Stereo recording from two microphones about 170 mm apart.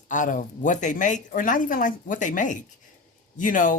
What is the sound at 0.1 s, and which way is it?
Speech, 50° left (ahead or behind).